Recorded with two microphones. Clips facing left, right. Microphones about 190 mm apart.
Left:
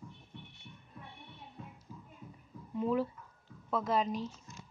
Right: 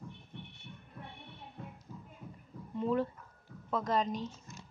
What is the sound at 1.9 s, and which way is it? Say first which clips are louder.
Music: right 2 dB; 55° right (ahead or behind).